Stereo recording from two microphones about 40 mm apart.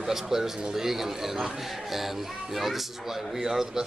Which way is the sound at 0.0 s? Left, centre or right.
Centre.